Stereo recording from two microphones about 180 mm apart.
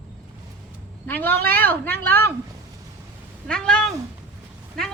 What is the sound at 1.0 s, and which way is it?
A woman's voice, 10° left (ahead or behind).